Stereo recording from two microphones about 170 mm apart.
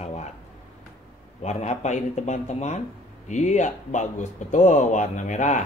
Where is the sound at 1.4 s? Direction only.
40° left (ahead or behind).